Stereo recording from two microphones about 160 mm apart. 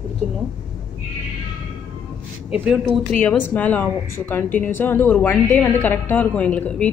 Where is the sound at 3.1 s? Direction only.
10° left (ahead or behind).